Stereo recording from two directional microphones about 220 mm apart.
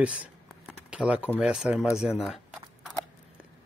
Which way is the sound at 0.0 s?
5° right (ahead or behind).